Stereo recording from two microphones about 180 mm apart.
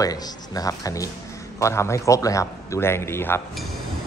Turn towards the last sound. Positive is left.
turn(degrees=15)  # may be behind; listen again after turning